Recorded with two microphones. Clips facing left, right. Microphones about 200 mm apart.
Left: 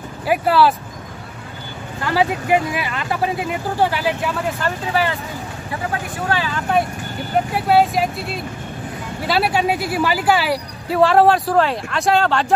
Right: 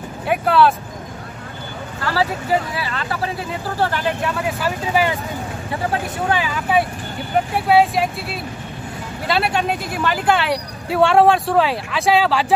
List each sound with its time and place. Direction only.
0.3 s speech: 5° left (ahead or behind)
2.7 s speech: 15° left (ahead or behind); by 5.1 s 10° right (ahead or behind)
5.7 s speech: 25° right (ahead or behind)
6.3 s speech: 10° right (ahead or behind)